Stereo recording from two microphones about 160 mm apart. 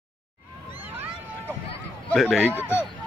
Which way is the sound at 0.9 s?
15° right (ahead or behind).